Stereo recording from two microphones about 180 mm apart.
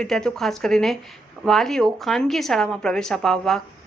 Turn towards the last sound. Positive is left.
turn(degrees=0)  # may be behind; listen again after turning